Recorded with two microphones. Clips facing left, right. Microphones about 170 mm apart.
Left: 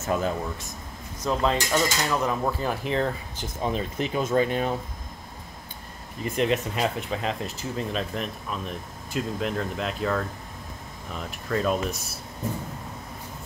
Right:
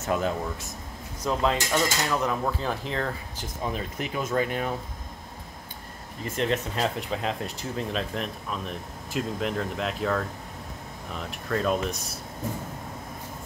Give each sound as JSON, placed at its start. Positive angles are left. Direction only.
{"t": 0.0, "sound": "speech", "side_deg": 0}
{"t": 2.0, "sound": "speech", "side_deg": 5}
{"t": 6.2, "sound": "speech", "side_deg": 15}